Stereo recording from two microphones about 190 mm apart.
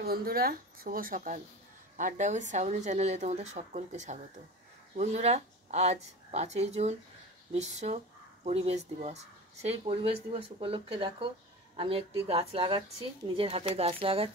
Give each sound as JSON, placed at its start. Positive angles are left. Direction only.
{"t": 0.0, "sound": "a woman's voice", "side_deg": -50}